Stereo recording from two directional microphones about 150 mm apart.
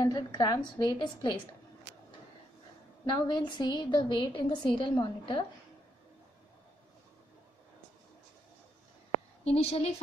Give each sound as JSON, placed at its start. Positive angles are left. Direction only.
{"t": 0.0, "sound": "a woman's voice", "side_deg": 25}
{"t": 3.1, "sound": "a woman's voice", "side_deg": 30}
{"t": 9.5, "sound": "a woman's voice", "side_deg": 45}